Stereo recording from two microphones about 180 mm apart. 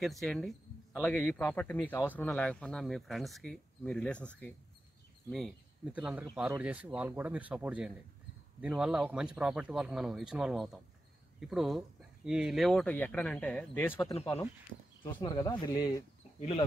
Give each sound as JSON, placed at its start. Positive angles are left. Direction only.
{"t": 0.0, "sound": "speech", "side_deg": 0}
{"t": 5.9, "sound": "speech", "side_deg": -10}
{"t": 16.3, "sound": "speech", "side_deg": 35}